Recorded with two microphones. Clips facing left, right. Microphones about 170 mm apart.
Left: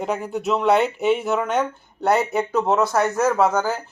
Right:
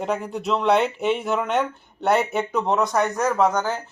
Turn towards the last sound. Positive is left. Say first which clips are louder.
# left 2 dB
turn(degrees=5)  # may be behind; listen again after turning